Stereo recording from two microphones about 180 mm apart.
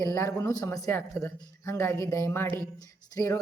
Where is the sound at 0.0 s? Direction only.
20° left (ahead or behind).